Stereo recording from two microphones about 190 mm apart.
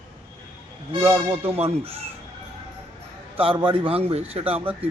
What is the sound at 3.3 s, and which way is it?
Speech, 30° right (ahead or behind).